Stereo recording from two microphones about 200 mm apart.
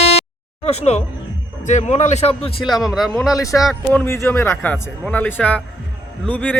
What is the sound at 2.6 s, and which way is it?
Speech, centre (ahead or behind).